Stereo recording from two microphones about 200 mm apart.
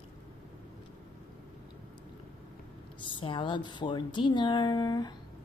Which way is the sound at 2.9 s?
25° left (ahead or behind).